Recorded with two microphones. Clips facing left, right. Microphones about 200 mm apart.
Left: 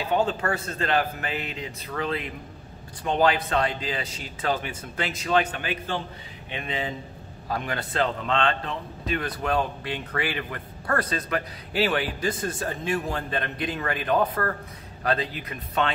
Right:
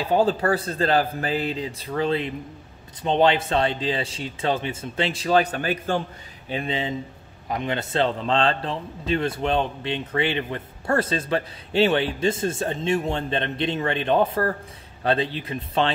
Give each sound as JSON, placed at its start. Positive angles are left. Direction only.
{"t": 0.0, "sound": "a man's voice", "side_deg": -35}
{"t": 6.5, "sound": "a man's voice", "side_deg": -30}